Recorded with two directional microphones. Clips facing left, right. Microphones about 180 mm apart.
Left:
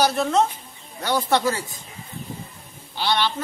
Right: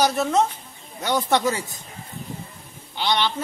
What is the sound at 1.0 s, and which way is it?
Speech, 15° right (ahead or behind).